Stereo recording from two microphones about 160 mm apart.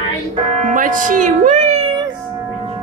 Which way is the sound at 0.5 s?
50° right (ahead or behind).